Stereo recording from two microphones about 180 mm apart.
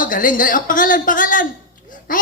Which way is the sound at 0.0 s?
50° left (ahead or behind).